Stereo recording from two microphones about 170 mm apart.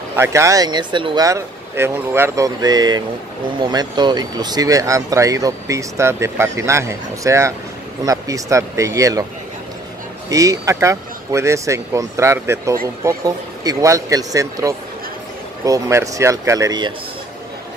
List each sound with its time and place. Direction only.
0.1 s speech: 15° right (ahead or behind)
10.3 s speech: 20° right (ahead or behind)